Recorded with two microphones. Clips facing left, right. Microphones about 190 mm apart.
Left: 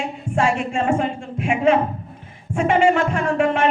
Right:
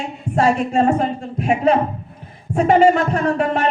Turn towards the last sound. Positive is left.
turn(degrees=-40)  # may be behind; listen again after turning